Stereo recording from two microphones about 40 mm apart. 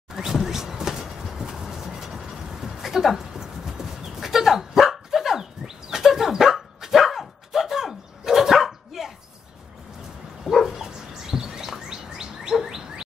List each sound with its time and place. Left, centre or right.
0.1 s a sound: centre
10.4 s dog: centre
10.9 s bird: centre
12.6 s chirp tone: centre